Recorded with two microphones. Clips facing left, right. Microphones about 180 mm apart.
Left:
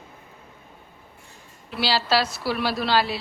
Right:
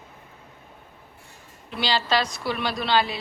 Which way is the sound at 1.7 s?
5° left (ahead or behind).